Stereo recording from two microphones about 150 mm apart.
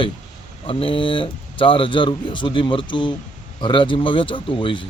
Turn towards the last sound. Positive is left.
turn(degrees=35)  # may be behind; listen again after turning